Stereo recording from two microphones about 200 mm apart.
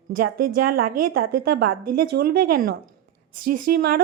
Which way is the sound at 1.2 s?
50° right (ahead or behind).